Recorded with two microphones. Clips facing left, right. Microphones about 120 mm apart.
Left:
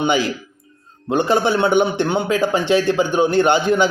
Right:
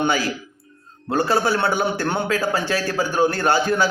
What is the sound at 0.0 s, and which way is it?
Speech, 20° left (ahead or behind).